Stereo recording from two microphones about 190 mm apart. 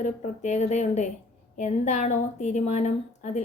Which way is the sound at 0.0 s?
35° left (ahead or behind).